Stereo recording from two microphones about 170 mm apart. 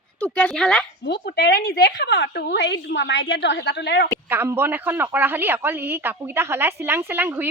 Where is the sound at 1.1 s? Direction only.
75° left (ahead or behind).